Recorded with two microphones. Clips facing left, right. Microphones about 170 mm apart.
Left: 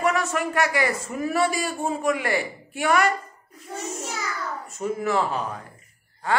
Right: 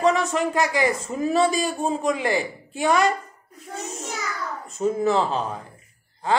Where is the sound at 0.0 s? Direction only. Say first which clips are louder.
Right 3 dB; 20° right (ahead or behind).